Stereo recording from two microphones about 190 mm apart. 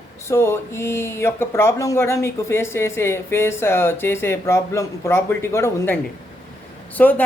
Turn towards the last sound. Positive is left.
turn(degrees=10)  # may be behind; listen again after turning